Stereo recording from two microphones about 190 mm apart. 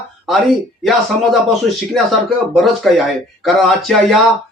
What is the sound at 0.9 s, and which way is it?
Speech, centre (ahead or behind).